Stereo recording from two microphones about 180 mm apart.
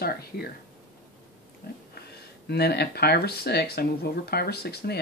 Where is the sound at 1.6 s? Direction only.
55° left (ahead or behind).